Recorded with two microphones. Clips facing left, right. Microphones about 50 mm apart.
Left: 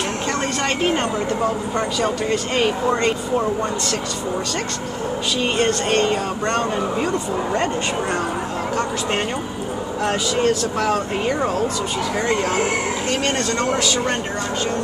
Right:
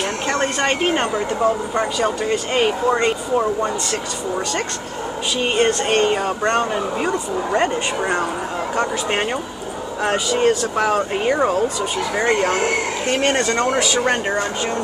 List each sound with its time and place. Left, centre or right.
0.3 s a sound: right
1.8 s speech: centre
5.4 s speech: centre
10.0 s speech: centre
13.2 s speech: right